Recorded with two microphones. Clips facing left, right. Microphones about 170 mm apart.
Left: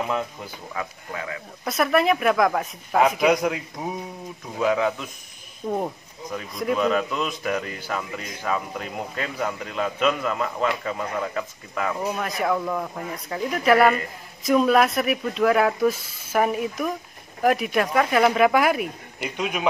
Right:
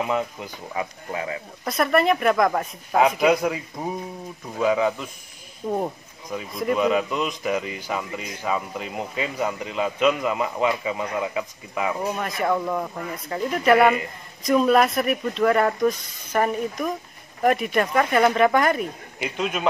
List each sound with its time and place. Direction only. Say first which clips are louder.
0.7 s speech: right 3 dB; 25° right (ahead or behind)
1.6 s a man's voice: even; centre (ahead or behind)